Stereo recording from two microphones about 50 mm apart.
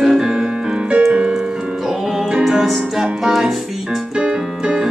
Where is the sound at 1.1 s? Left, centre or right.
Right.